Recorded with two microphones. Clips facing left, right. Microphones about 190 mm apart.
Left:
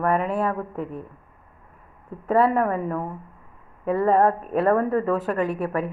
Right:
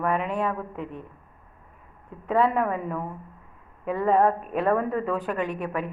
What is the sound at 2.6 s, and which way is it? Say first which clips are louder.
A woman's voice: left 3 dB; 35° left (ahead or behind).